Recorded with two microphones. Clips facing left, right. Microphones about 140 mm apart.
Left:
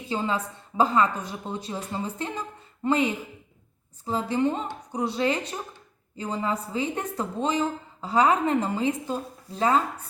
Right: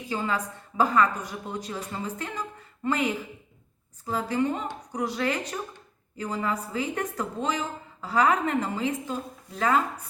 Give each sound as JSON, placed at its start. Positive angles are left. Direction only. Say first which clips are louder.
{"t": 0.1, "sound": "a woman's voice", "louder": "left 1 dB", "side_deg": 25}